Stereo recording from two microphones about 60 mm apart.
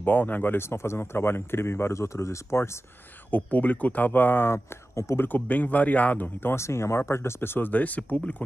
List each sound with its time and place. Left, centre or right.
0.0 s speech: left
3.3 s speech: left
4.9 s a man's voice: left
5.2 s speech: left
6.5 s speech: left